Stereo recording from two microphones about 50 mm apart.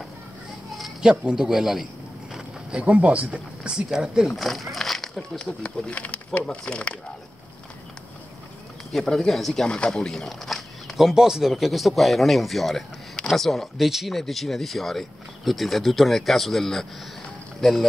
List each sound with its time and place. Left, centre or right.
1.3 s a man's voice: centre
2.8 s speech: right
4.4 s speech: centre
5.4 s speech: centre
8.9 s speech: centre